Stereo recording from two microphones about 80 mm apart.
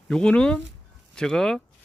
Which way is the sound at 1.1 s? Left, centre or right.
Centre.